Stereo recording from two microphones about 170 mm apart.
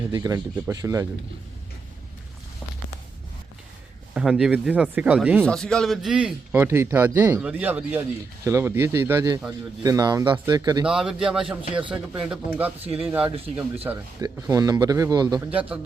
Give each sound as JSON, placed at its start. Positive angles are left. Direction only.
{"t": 0.1, "sound": "speech", "side_deg": -20}
{"t": 4.1, "sound": "a man's voice", "side_deg": -5}
{"t": 5.5, "sound": "a man's voice", "side_deg": 5}
{"t": 10.8, "sound": "a man's voice", "side_deg": -5}
{"t": 11.7, "sound": "speech", "side_deg": -30}
{"t": 12.3, "sound": "a man's voice", "side_deg": -10}
{"t": 12.8, "sound": "speech", "side_deg": -35}
{"t": 13.1, "sound": "a man's voice", "side_deg": -10}
{"t": 15.4, "sound": "a man's voice", "side_deg": -10}